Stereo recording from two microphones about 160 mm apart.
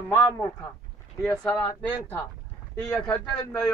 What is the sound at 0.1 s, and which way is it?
A man's voice, 10° left (ahead or behind).